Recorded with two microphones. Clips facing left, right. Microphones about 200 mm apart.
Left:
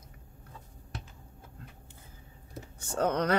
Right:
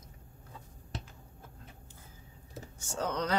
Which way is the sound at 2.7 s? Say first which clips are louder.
Left 6 dB; 60° left (ahead or behind).